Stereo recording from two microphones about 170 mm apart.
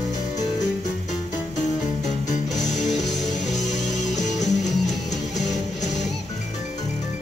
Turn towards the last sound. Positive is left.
turn(degrees=0)  # may be behind; listen again after turning